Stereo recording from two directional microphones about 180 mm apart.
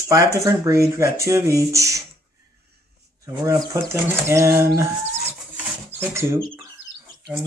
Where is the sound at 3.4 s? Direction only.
15° right (ahead or behind).